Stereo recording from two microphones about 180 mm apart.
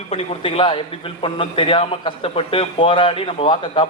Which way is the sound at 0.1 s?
30° left (ahead or behind).